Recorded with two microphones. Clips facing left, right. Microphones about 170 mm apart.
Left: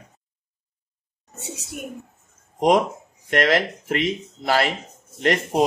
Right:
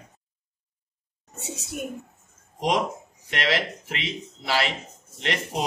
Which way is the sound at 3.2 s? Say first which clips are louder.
Left 7 dB; 50° left (ahead or behind).